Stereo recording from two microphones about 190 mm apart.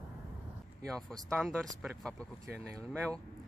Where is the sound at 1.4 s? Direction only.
Centre (ahead or behind).